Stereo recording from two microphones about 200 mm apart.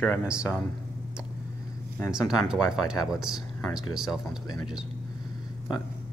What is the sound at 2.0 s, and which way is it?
Speech, 5° right (ahead or behind).